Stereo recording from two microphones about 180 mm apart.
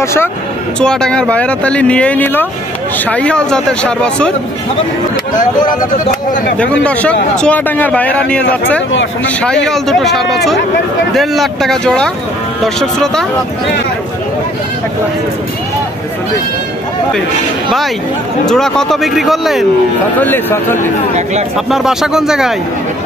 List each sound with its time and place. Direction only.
0.0 s a man's voice: 15° left (ahead or behind)
0.7 s a man's voice: 5° left (ahead or behind)
6.6 s a man's voice: 5° left (ahead or behind)
18.5 s speech: 5° left (ahead or behind)
20.2 s a man's voice: 10° left (ahead or behind)
21.6 s speech: centre (ahead or behind)